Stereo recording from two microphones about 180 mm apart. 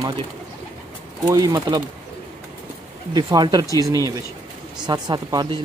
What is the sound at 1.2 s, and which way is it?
Speech, 20° right (ahead or behind).